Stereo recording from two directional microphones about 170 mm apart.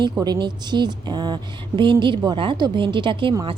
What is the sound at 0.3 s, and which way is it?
A woman's voice, 25° right (ahead or behind).